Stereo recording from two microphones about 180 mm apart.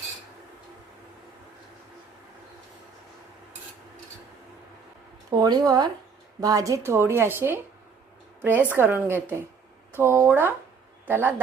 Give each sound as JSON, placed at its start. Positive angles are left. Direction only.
{"t": 5.4, "sound": "a woman's voice", "side_deg": -20}
{"t": 8.7, "sound": "a woman's voice", "side_deg": -10}